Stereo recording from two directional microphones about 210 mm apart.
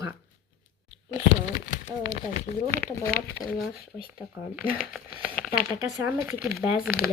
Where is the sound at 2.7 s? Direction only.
10° left (ahead or behind).